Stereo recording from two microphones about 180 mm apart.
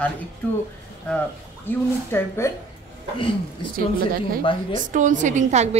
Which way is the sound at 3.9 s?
55° right (ahead or behind).